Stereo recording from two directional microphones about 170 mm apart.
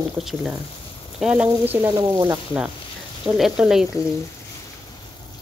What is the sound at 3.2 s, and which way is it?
Speech, centre (ahead or behind).